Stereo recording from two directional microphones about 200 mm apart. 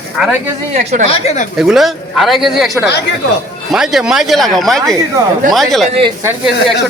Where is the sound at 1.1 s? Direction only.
35° left (ahead or behind).